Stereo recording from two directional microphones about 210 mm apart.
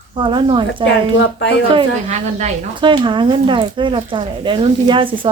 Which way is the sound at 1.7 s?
30° right (ahead or behind).